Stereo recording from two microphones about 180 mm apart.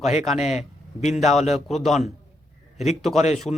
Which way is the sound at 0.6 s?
40° left (ahead or behind).